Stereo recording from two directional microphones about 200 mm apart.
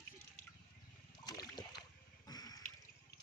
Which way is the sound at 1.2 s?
20° left (ahead or behind).